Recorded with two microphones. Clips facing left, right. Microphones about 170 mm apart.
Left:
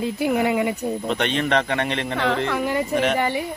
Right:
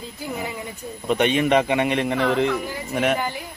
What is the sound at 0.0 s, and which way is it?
Speech, 70° left (ahead or behind).